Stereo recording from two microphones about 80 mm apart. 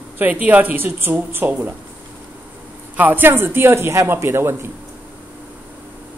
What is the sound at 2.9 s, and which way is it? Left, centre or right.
A woman's voice, right.